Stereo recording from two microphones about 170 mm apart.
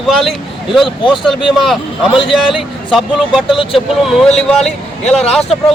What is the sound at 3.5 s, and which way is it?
Speech, 30° left (ahead or behind).